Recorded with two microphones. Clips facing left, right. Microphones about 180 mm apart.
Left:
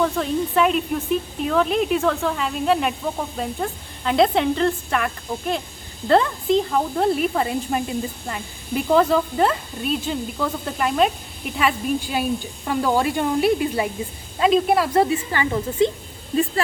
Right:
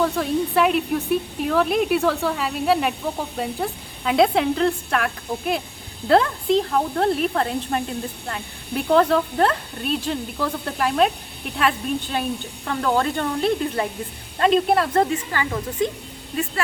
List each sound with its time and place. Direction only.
0.0 s speech: centre (ahead or behind)
15.3 s speech: 25° left (ahead or behind)